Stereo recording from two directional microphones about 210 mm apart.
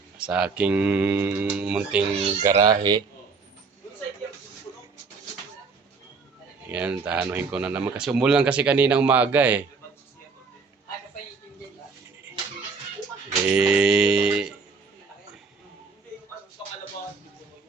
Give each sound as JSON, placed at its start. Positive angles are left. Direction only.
{"t": 0.2, "sound": "speech", "side_deg": -5}
{"t": 2.4, "sound": "speech", "side_deg": -15}
{"t": 6.7, "sound": "speech", "side_deg": -5}
{"t": 13.5, "sound": "mantra", "side_deg": -5}